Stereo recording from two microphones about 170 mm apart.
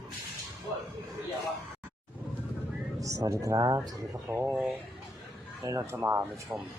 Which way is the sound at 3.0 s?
20° right (ahead or behind).